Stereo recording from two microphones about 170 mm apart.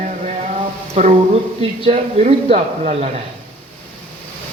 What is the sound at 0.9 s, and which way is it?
Speech, 40° right (ahead or behind).